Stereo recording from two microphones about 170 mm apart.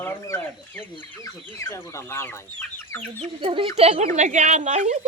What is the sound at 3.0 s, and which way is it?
Speech, 30° right (ahead or behind).